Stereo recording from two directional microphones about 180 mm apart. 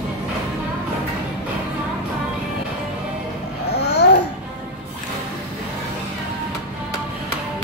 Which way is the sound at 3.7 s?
65° left (ahead or behind).